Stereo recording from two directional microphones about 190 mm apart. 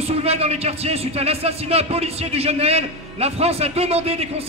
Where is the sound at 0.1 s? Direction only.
35° right (ahead or behind).